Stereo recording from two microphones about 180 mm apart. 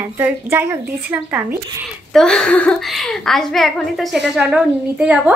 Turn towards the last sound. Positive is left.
turn(degrees=-5)  # may be behind; listen again after turning